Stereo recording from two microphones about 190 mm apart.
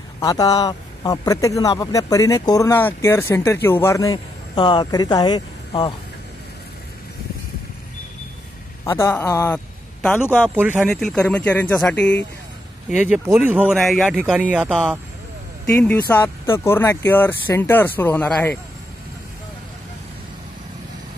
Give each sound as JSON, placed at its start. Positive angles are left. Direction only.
{"t": 0.2, "sound": "speech", "side_deg": 20}
{"t": 8.8, "sound": "speech", "side_deg": 15}
{"t": 10.4, "sound": "speech", "side_deg": -10}
{"t": 13.1, "sound": "speech", "side_deg": -10}
{"t": 16.1, "sound": "speech", "side_deg": 10}